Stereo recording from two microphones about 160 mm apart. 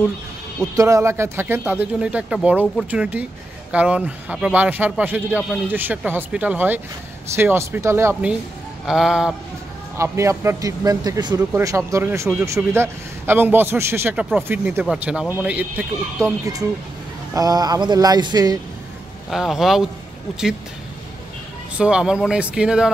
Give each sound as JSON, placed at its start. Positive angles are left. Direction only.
{"t": 0.7, "sound": "a man's voice", "side_deg": -20}
{"t": 9.9, "sound": "a man's voice", "side_deg": -15}
{"t": 17.3, "sound": "a man's voice", "side_deg": -25}
{"t": 19.3, "sound": "speech", "side_deg": 0}
{"t": 21.7, "sound": "speech", "side_deg": -5}